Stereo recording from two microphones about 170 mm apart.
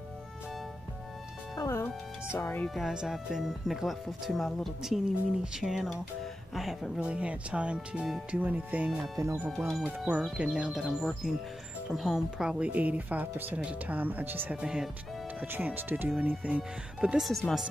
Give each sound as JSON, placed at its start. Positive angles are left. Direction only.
{"t": 1.5, "sound": "music", "side_deg": 20}
{"t": 2.3, "sound": "speech", "side_deg": 10}
{"t": 9.5, "sound": "speech", "side_deg": 0}